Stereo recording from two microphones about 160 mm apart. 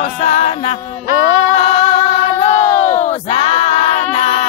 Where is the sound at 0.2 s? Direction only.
45° left (ahead or behind).